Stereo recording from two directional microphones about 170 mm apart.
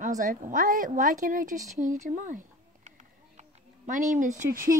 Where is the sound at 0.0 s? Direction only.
50° right (ahead or behind).